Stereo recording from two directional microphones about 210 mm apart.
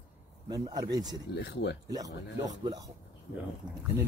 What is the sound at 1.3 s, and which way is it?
Speech, 55° left (ahead or behind).